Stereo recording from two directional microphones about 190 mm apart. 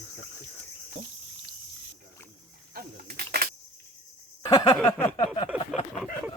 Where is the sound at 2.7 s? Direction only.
50° right (ahead or behind).